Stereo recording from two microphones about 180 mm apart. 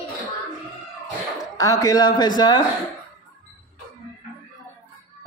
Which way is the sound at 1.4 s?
20° left (ahead or behind).